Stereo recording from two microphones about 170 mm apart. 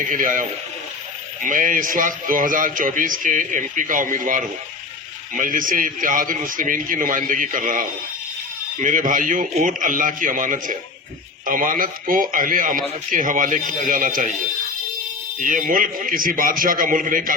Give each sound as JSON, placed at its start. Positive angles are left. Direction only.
{"t": 0.0, "sound": "a man's voice", "side_deg": -50}
{"t": 15.4, "sound": "a man's voice", "side_deg": -50}